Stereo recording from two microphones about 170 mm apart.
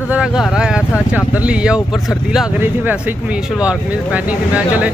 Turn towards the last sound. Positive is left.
turn(degrees=-10)  # may be behind; listen again after turning